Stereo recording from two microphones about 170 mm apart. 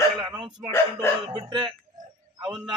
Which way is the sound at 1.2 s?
25° right (ahead or behind).